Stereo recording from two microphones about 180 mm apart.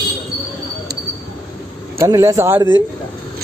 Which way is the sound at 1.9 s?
15° right (ahead or behind).